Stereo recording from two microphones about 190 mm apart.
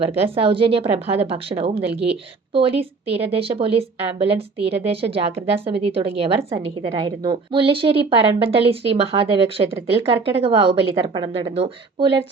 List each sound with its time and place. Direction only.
0.0 s a woman's voice: 30° right (ahead or behind)